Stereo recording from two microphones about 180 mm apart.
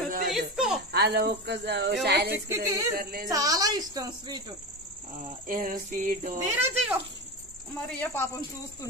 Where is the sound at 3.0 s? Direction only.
55° right (ahead or behind).